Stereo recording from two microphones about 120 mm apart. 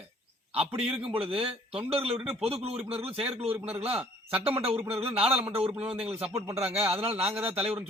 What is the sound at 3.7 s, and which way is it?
Speech, 55° right (ahead or behind).